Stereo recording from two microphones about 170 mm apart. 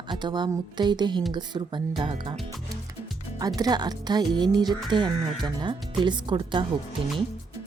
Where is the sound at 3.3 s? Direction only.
20° right (ahead or behind).